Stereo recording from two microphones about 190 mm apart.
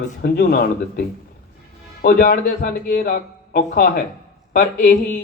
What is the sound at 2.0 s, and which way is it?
A man's voice, 55° left (ahead or behind).